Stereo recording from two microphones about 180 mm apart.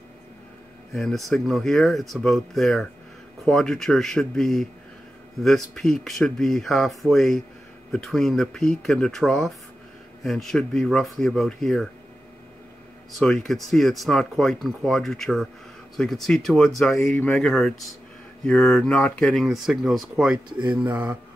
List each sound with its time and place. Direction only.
0.9 s speech: centre (ahead or behind)
13.1 s speech: 5° left (ahead or behind)
20.4 s speech: 25° right (ahead or behind)
20.7 s speech: 10° right (ahead or behind)